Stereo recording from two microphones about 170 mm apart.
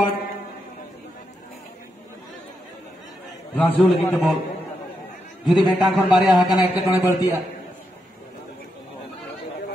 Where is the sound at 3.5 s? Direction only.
10° left (ahead or behind).